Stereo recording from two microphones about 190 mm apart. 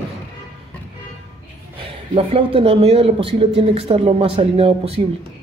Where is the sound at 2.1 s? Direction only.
30° right (ahead or behind).